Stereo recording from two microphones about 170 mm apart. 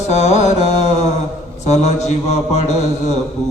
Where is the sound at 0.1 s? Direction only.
40° left (ahead or behind).